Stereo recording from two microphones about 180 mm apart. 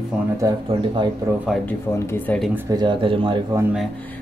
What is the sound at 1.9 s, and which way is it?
Speech, 15° left (ahead or behind).